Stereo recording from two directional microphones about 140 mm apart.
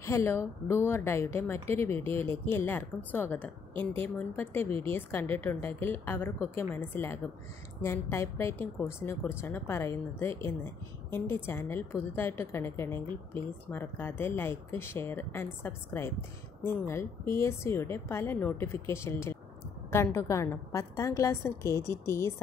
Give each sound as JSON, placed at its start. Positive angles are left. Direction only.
{"t": 0.0, "sound": "a woman's voice", "side_deg": 20}